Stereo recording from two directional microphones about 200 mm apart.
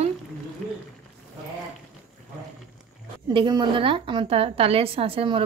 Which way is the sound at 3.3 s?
25° right (ahead or behind).